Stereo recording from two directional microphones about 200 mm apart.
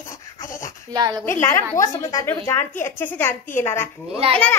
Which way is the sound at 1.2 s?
10° left (ahead or behind).